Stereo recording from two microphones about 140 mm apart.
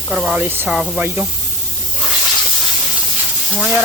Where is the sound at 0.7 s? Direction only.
5° right (ahead or behind).